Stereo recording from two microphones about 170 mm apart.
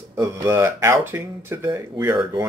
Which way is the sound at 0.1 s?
15° right (ahead or behind).